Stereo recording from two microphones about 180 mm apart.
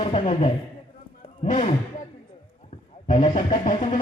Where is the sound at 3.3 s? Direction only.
45° left (ahead or behind).